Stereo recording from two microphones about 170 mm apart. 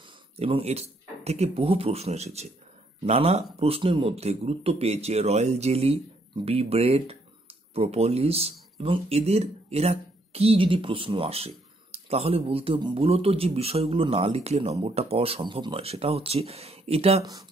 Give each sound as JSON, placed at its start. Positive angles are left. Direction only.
{"t": 0.4, "sound": "speech", "side_deg": -35}
{"t": 17.2, "sound": "speech", "side_deg": -20}